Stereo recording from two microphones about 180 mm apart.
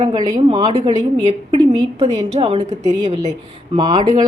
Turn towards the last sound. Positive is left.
turn(degrees=-25)  # may be behind; listen again after turning